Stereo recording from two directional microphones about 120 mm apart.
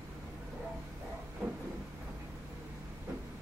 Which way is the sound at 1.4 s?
15° right (ahead or behind).